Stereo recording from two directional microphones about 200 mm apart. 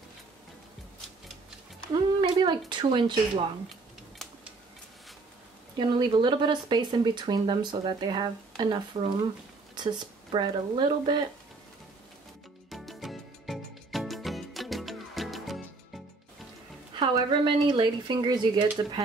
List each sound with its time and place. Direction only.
2.2 s a sound: 20° right (ahead or behind)
2.7 s speech: 25° right (ahead or behind)
5.8 s speech: 25° right (ahead or behind)
12.6 s music: centre (ahead or behind)
16.9 s speech: 25° right (ahead or behind)